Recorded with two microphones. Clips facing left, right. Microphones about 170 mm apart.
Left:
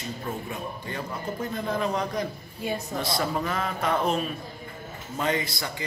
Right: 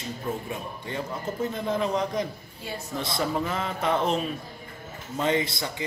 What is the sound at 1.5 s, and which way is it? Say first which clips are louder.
A man's voice: even; 20° right (ahead or behind).